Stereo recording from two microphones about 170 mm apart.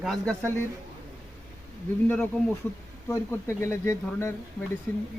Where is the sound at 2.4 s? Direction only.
5° left (ahead or behind).